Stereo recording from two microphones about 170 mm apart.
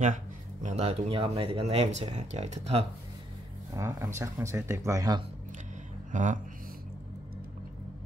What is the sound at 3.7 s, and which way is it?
Speech, 15° right (ahead or behind).